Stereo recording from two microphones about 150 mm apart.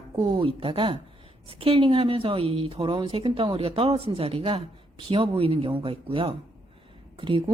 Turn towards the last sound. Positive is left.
turn(degrees=-35)  # may be behind; listen again after turning